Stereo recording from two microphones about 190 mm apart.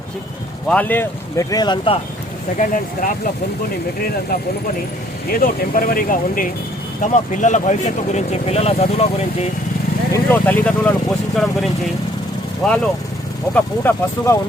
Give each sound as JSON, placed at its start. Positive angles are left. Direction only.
{"t": 0.7, "sound": "speech", "side_deg": 10}
{"t": 2.6, "sound": "speech", "side_deg": 45}
{"t": 5.3, "sound": "speech", "side_deg": 50}
{"t": 10.1, "sound": "speech", "side_deg": 10}
{"t": 12.6, "sound": "speech", "side_deg": 5}